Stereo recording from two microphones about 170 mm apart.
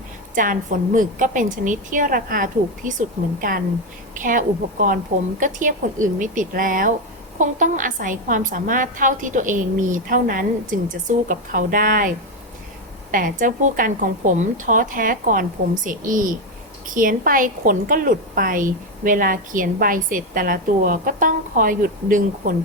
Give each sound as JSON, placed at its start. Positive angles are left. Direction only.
{"t": 0.3, "sound": "a woman's voice", "side_deg": -50}